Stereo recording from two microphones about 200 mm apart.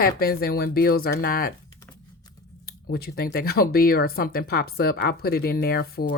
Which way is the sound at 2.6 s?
50° left (ahead or behind).